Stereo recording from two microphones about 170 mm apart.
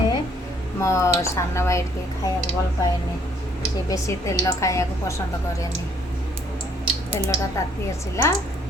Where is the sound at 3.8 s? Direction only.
20° left (ahead or behind).